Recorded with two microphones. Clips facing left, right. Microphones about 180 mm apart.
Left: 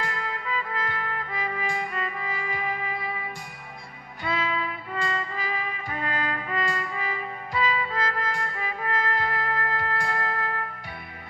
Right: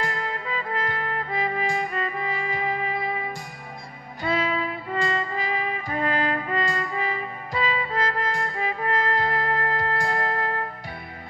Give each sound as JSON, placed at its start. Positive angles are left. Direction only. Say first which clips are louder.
{"t": 0.0, "sound": "trumpet", "louder": "right 3 dB", "side_deg": -35}
{"t": 2.2, "sound": "trumpet", "louder": "right 4 dB", "side_deg": -25}
{"t": 4.2, "sound": "music", "louder": "right 4 dB", "side_deg": -35}
{"t": 5.9, "sound": "trumpet", "louder": "right 6 dB", "side_deg": -35}